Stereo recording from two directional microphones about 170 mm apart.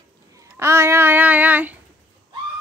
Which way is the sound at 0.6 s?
15° right (ahead or behind).